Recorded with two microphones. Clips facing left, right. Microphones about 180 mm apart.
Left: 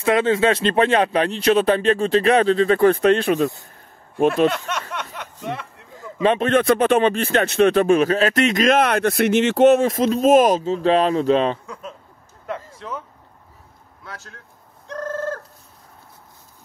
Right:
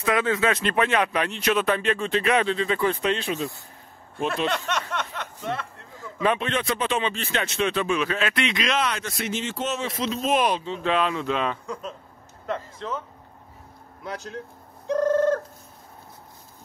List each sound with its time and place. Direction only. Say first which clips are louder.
0.0 s speech: left 6 dB; 25° left (ahead or behind); by 3.4 s 55° left (ahead or behind)
4.5 s a sound: left 3 dB; 5° left (ahead or behind)
6.4 s speech: left 10 dB; 55° left (ahead or behind); by 11.6 s 30° left (ahead or behind)
11.6 s speech: right 2 dB; 5° left (ahead or behind)
12.4 s a sound: even; 10° left (ahead or behind)
14.0 s speech: right 7 dB; 20° right (ahead or behind)
14.9 s bird: right 6 dB; centre (ahead or behind)